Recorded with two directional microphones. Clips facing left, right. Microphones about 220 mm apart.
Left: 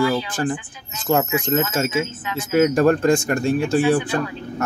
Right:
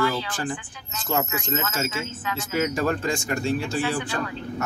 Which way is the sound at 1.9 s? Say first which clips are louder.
Left 7 dB; 20° left (ahead or behind).